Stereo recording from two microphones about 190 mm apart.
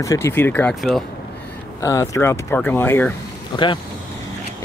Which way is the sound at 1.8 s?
15° left (ahead or behind).